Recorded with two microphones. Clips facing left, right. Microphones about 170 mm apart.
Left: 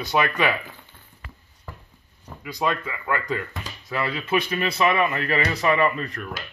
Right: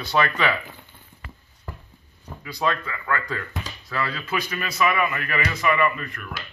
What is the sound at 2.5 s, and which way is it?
A man's voice, 15° left (ahead or behind).